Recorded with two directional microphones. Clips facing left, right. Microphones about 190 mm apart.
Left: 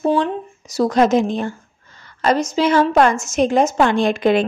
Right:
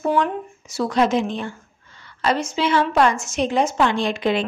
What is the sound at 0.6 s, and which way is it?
A woman's voice, 40° left (ahead or behind).